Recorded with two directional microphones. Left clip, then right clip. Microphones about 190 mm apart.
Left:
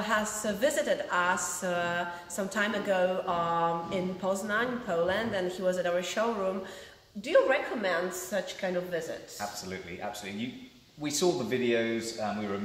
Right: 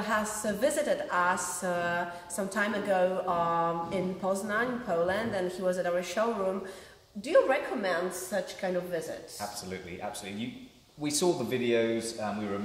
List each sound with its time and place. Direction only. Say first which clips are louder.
0.0 s a woman's voice: left 1 dB; centre (ahead or behind)
7.2 s a woman's voice: even; centre (ahead or behind)
11.0 s speech: even; 20° right (ahead or behind)